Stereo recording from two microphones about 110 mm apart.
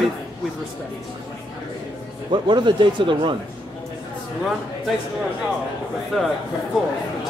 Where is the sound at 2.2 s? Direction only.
45° right (ahead or behind).